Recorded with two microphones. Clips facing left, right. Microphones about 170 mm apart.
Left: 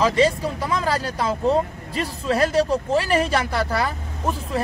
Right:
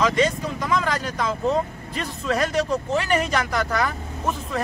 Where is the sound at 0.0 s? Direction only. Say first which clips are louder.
Left 2 dB; 30° left (ahead or behind).